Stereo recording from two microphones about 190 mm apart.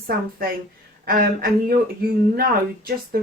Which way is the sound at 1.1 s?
50° right (ahead or behind).